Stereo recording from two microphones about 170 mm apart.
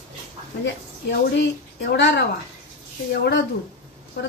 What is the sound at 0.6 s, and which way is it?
A woman's voice, 85° left.